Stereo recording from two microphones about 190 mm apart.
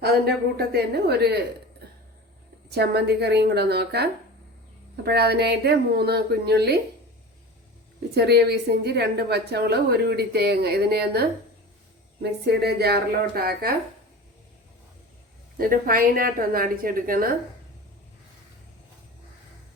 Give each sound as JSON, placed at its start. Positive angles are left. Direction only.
{"t": 0.0, "sound": "a woman's voice", "side_deg": -55}
{"t": 2.6, "sound": "a woman's voice", "side_deg": -60}
{"t": 8.1, "sound": "a woman's voice", "side_deg": -60}
{"t": 15.5, "sound": "a woman's voice", "side_deg": -50}